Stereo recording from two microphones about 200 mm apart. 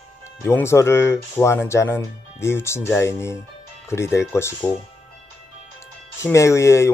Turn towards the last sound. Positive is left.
turn(degrees=15)  # may be behind; listen again after turning